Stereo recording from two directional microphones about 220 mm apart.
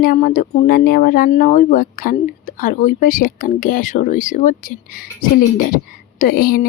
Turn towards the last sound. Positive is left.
turn(degrees=40)  # may be behind; listen again after turning